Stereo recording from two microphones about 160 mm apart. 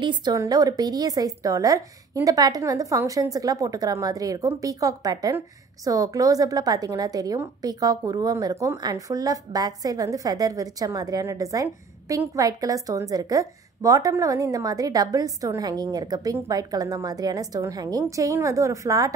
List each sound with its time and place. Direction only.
0.0 s a woman's voice: 30° right (ahead or behind)